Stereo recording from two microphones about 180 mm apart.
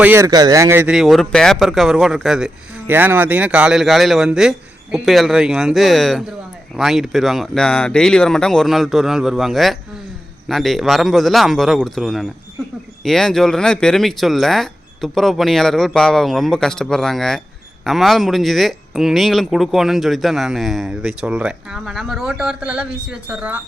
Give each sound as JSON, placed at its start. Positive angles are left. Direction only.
{"t": 0.0, "sound": "speech", "side_deg": -15}
{"t": 0.9, "sound": "speech", "side_deg": 0}